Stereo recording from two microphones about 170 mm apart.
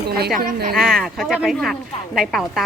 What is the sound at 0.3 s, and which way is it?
Speech, 55° right (ahead or behind).